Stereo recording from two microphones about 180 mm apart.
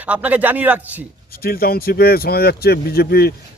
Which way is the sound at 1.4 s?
55° left (ahead or behind).